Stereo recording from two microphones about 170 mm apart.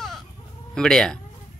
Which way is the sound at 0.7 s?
5° left (ahead or behind).